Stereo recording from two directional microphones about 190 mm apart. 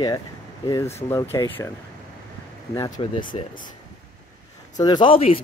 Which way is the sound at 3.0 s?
30° left (ahead or behind).